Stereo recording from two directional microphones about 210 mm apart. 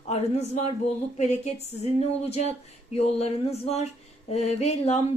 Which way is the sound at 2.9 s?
30° left (ahead or behind).